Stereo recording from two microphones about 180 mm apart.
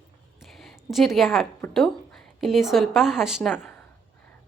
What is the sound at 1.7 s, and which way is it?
A woman's voice, centre (ahead or behind).